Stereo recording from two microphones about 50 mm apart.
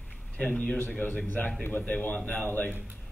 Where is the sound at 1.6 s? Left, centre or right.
Left.